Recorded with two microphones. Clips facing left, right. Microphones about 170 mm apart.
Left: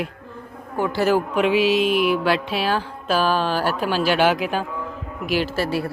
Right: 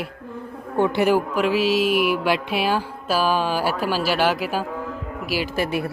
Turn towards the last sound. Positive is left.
turn(degrees=-20)  # may be behind; listen again after turning